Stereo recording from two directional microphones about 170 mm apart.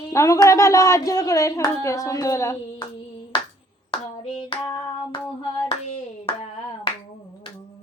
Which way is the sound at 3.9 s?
30° left (ahead or behind).